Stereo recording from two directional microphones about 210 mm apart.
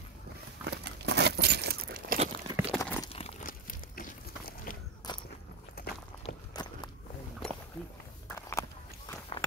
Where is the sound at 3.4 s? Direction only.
40° left (ahead or behind).